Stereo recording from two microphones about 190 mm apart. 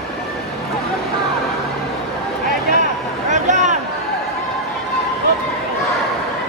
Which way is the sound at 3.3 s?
40° right (ahead or behind).